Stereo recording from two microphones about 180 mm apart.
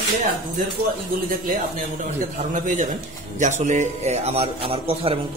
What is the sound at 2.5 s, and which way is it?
A man's voice, 45° right (ahead or behind).